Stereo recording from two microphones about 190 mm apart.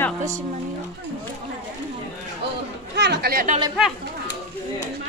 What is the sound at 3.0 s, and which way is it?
Speech, 60° right (ahead or behind).